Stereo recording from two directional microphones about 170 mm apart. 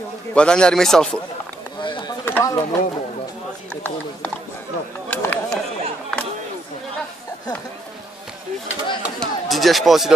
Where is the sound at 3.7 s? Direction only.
10° left (ahead or behind).